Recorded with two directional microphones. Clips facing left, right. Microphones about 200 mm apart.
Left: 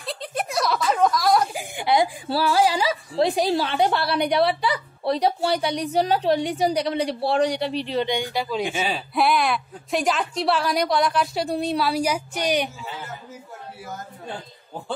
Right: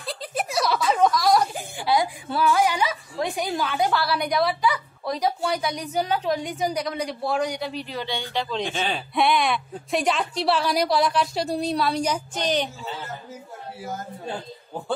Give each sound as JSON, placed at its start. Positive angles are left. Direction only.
{"t": 0.0, "sound": "chuckle", "side_deg": 0}
{"t": 1.9, "sound": "a woman's voice", "side_deg": 30}